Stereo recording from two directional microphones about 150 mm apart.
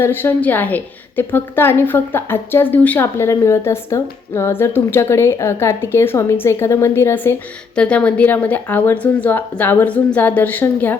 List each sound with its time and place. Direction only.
0.0 s a woman's voice: 15° left (ahead or behind)